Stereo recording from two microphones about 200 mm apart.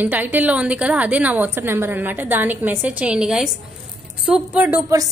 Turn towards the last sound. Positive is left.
turn(degrees=-15)  # may be behind; listen again after turning